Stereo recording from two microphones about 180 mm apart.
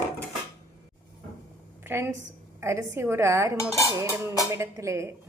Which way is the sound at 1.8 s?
15° right (ahead or behind).